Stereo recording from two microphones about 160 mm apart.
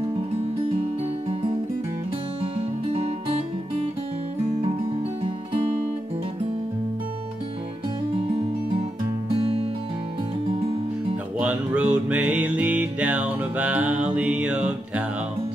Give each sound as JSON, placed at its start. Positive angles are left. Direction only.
{"t": 2.4, "sound": "music", "side_deg": -35}
{"t": 5.2, "sound": "music", "side_deg": -35}
{"t": 9.3, "sound": "music", "side_deg": -35}
{"t": 11.3, "sound": "music", "side_deg": -10}